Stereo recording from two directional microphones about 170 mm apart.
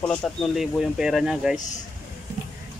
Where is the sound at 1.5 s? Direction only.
50° left (ahead or behind).